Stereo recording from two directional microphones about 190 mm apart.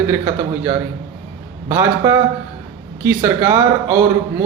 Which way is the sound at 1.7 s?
15° right (ahead or behind).